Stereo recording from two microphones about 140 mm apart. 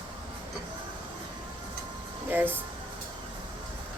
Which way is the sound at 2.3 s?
15° right (ahead or behind).